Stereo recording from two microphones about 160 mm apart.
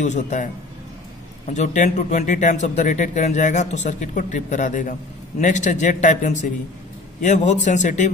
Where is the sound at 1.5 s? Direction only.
50° left (ahead or behind).